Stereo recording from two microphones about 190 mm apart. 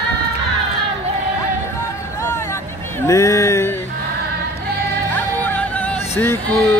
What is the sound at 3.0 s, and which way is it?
Speech, 15° left (ahead or behind).